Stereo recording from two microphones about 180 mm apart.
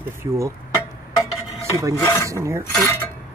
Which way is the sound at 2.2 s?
15° right (ahead or behind).